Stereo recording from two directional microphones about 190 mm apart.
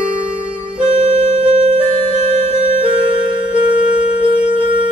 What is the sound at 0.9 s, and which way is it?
Music, 35° right (ahead or behind).